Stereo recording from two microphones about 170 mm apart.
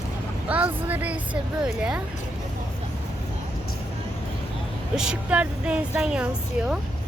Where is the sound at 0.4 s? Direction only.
10° right (ahead or behind).